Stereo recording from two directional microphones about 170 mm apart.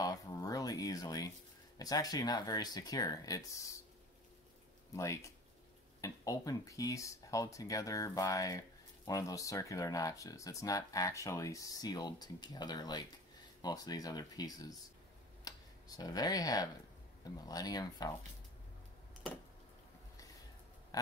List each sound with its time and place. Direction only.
0.0 s a sound: 20° left (ahead or behind)
1.8 s speech: 20° left (ahead or behind)
4.9 s speech: 15° left (ahead or behind)
20.9 s pig: 20° left (ahead or behind)